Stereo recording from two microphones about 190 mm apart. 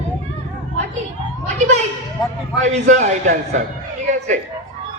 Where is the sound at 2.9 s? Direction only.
40° right (ahead or behind).